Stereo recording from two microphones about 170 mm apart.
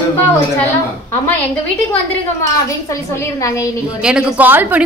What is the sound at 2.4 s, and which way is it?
A woman's voice, 20° left (ahead or behind).